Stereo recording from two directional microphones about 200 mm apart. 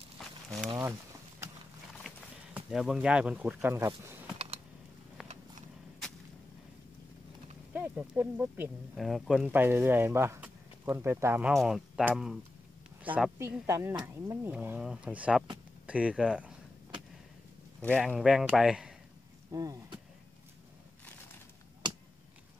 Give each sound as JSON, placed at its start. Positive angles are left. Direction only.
{"t": 0.2, "sound": "a sound", "side_deg": 0}
{"t": 2.0, "sound": "speech", "side_deg": 0}
{"t": 7.7, "sound": "speech", "side_deg": -10}
{"t": 17.8, "sound": "speech", "side_deg": 0}
{"t": 19.5, "sound": "speech", "side_deg": -15}